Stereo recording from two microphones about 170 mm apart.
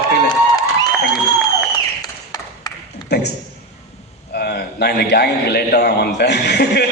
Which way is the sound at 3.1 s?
75° left (ahead or behind).